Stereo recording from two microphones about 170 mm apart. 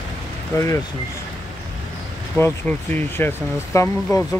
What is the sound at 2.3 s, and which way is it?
Speech, 10° left (ahead or behind).